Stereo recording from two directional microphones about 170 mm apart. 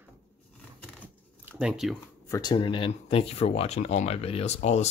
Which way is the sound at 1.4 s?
5° right (ahead or behind).